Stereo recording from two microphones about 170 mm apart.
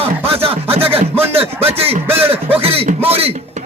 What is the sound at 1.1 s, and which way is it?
Music, 15° right (ahead or behind).